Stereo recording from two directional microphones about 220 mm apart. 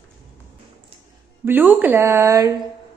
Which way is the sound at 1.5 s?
10° right (ahead or behind).